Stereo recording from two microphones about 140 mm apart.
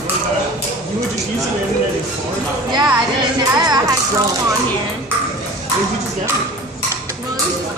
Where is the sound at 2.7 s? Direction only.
30° right (ahead or behind).